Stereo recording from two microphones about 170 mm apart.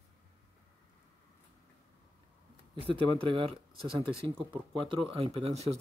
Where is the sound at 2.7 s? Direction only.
30° right (ahead or behind).